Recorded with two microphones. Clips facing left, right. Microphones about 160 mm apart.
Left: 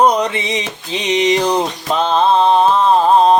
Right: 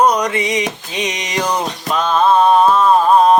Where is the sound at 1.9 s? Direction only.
25° left (ahead or behind).